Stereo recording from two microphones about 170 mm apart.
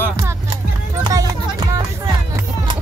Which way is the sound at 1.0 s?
20° right (ahead or behind).